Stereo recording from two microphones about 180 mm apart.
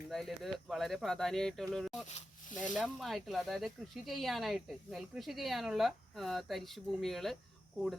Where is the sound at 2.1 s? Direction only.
40° left (ahead or behind).